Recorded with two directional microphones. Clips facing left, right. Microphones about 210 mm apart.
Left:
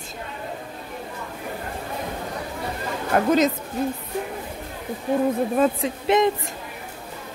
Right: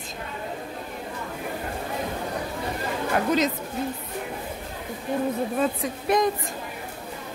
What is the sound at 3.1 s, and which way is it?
Speech, 45° left (ahead or behind).